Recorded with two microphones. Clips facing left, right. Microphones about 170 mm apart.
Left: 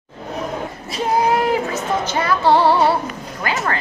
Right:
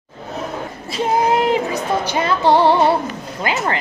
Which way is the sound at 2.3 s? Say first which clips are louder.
Right 1 dB; 20° right (ahead or behind).